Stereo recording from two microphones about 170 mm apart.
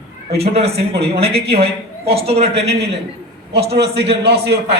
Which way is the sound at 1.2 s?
70° right (ahead or behind).